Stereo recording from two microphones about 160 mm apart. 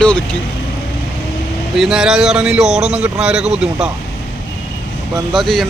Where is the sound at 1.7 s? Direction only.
Centre (ahead or behind).